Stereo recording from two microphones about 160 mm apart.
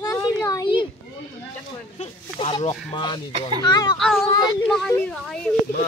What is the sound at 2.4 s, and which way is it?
Speech, 35° left (ahead or behind).